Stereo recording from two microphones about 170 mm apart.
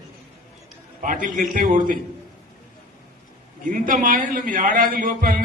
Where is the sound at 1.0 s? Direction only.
50° right (ahead or behind).